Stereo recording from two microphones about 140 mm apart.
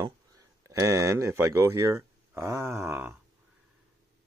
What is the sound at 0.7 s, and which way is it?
Speech, 25° right (ahead or behind).